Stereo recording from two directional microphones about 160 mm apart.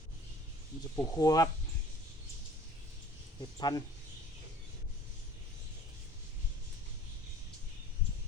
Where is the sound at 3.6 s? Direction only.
25° left (ahead or behind).